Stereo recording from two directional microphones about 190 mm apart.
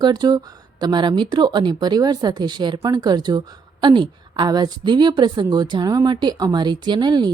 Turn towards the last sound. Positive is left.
turn(degrees=-25)  # may be behind; listen again after turning